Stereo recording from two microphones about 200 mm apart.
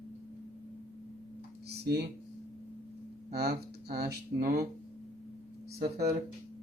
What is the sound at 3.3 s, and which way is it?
Speech, 50° right (ahead or behind).